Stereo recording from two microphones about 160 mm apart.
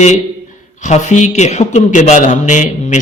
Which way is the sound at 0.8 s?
50° left (ahead or behind).